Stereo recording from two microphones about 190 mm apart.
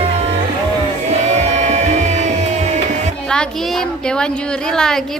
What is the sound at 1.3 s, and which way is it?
Music, 35° right (ahead or behind).